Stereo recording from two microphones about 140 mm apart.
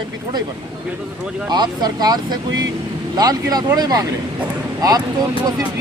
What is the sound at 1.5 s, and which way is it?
Speech, 30° right (ahead or behind).